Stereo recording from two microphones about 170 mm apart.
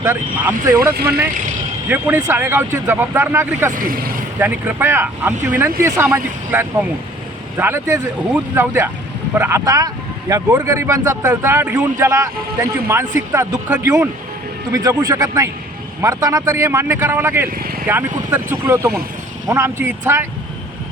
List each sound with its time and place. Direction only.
0.0 s speech: 15° right (ahead or behind)
0.9 s speech: 70° right (ahead or behind)
1.9 s speech: 10° right (ahead or behind)
17.5 s speech: 60° right (ahead or behind)
18.3 s speech: 15° right (ahead or behind)